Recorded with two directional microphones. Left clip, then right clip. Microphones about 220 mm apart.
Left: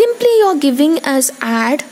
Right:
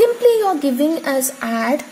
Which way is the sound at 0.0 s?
25° left (ahead or behind).